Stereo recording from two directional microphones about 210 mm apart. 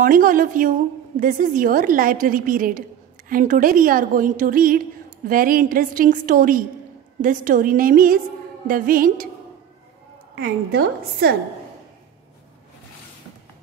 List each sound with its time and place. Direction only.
0.0 s a woman's voice: 40° right (ahead or behind)
10.3 s a woman's voice: 50° right (ahead or behind)